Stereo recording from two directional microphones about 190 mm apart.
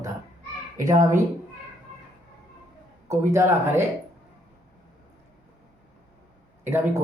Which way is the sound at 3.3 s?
15° right (ahead or behind).